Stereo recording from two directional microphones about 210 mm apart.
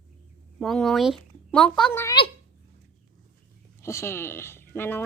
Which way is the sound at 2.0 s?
25° left (ahead or behind).